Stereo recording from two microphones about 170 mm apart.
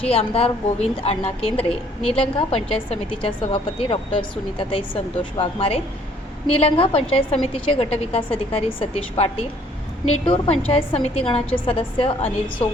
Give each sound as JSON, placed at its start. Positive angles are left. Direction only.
{"t": 0.0, "sound": "speech", "side_deg": 35}